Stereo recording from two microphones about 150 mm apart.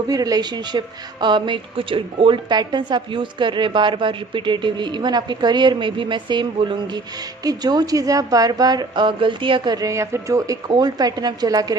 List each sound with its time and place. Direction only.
0.1 s a woman's voice: 25° right (ahead or behind)